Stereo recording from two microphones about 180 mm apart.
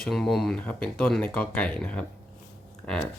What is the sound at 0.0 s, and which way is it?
Speech, centre (ahead or behind).